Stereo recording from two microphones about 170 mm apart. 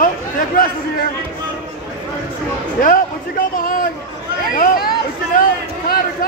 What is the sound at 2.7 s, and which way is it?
Speech, 55° left (ahead or behind).